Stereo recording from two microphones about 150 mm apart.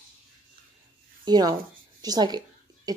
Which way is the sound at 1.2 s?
25° right (ahead or behind).